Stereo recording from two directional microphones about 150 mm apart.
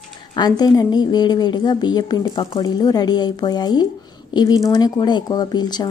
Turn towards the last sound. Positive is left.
turn(degrees=30)  # may be behind; listen again after turning